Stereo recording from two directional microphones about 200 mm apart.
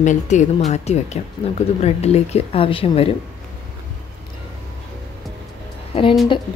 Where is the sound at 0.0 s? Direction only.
35° left (ahead or behind).